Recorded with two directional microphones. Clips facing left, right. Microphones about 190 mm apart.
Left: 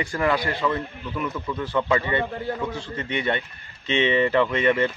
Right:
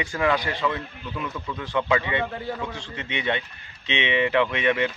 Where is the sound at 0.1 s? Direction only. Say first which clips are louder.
Even; centre (ahead or behind).